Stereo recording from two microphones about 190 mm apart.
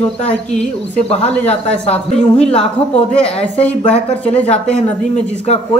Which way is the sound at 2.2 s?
5° left (ahead or behind).